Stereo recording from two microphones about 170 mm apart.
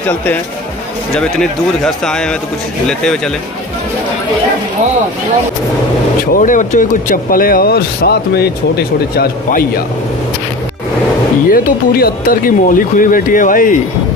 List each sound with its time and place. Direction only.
1.1 s speech: 5° left (ahead or behind)
6.3 s a man's voice: 50° left (ahead or behind)
11.5 s a man's voice: 60° left (ahead or behind)